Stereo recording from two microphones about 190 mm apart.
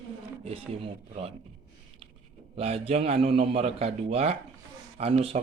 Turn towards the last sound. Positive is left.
turn(degrees=-30)  # may be behind; listen again after turning